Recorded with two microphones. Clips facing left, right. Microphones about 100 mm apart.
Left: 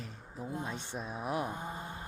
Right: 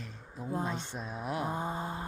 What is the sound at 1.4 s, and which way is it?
Vehicle, 30° right (ahead or behind).